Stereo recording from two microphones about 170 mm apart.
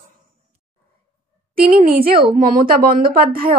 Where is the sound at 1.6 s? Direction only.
60° right (ahead or behind).